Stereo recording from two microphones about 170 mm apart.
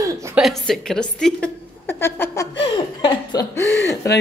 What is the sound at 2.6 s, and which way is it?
Chuckle, 30° left (ahead or behind).